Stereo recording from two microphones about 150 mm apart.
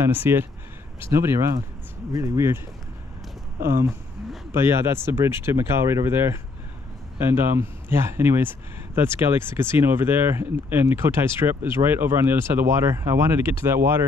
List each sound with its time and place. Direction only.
0.0 s speech: 15° right (ahead or behind)
3.6 s speech: 15° right (ahead or behind)